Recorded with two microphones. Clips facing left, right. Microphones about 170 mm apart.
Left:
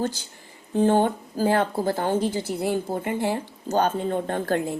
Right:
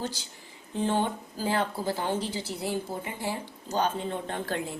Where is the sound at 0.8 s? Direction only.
45° left (ahead or behind).